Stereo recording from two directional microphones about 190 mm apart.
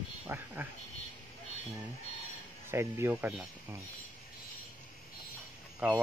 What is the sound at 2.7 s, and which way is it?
Speech, 15° right (ahead or behind).